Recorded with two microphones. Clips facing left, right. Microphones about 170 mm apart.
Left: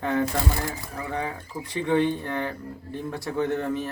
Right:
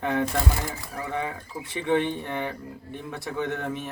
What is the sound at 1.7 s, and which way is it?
Speech, 20° right (ahead or behind).